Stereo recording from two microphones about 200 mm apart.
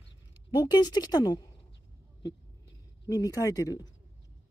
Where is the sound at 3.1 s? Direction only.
15° left (ahead or behind).